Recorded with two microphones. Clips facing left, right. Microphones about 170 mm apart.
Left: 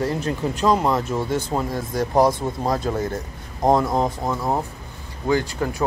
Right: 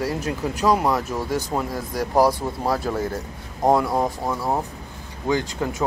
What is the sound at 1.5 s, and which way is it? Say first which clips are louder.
Speech: left 2 dB; 5° right (ahead or behind).